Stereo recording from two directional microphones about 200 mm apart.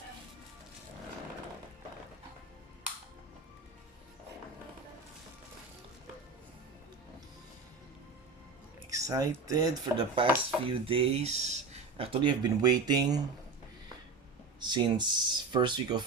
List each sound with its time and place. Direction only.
8.9 s speech: 15° right (ahead or behind)
14.6 s speech: 20° right (ahead or behind)